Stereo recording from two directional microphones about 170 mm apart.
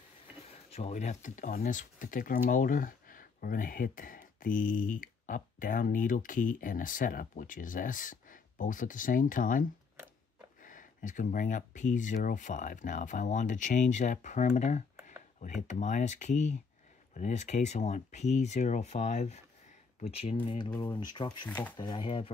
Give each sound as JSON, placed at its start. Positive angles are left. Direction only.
{"t": 0.7, "sound": "speech", "side_deg": 40}
{"t": 21.5, "sound": "speech", "side_deg": 10}
{"t": 21.7, "sound": "speech", "side_deg": 25}